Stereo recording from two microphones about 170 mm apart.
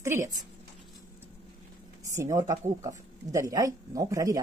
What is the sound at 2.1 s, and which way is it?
Speech, 20° right (ahead or behind).